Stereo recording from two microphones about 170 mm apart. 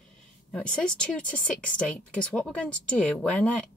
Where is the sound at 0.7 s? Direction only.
5° left (ahead or behind).